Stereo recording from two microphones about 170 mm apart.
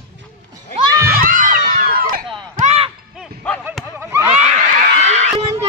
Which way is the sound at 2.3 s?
35° right (ahead or behind).